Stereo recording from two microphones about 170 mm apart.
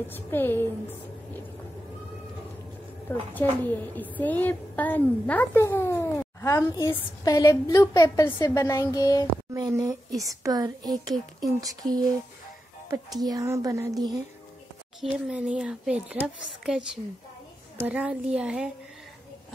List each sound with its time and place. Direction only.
0.1 s a woman's voice: 10° left (ahead or behind)
3.3 s a woman's voice: 10° left (ahead or behind)
9.5 s speech: 20° right (ahead or behind)
15.0 s a child's voice: 5° right (ahead or behind)